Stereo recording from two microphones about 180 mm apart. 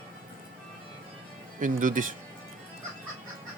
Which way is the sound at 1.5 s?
50° right (ahead or behind).